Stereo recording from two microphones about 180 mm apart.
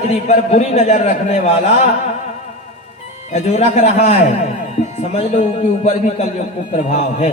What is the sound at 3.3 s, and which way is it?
A man's voice, 40° left (ahead or behind).